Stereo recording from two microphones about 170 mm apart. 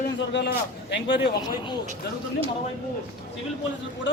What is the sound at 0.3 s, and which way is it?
Speech, 90° left.